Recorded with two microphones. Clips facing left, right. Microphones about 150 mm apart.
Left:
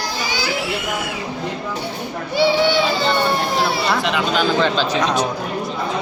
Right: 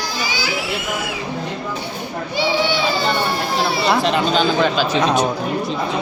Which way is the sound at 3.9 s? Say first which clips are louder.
Right 3 dB; 35° right (ahead or behind).